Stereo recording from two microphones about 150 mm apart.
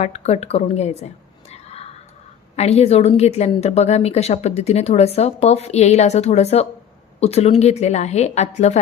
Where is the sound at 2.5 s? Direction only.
45° left (ahead or behind).